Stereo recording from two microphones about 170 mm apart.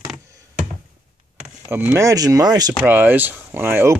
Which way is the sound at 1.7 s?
15° right (ahead or behind).